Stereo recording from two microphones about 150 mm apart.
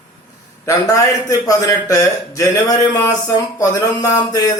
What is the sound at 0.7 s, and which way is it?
A man's voice, 20° left (ahead or behind).